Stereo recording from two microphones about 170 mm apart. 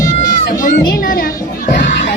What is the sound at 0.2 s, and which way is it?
Music, 50° left (ahead or behind).